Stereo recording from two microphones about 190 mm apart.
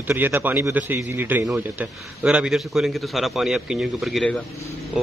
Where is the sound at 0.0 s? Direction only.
10° right (ahead or behind).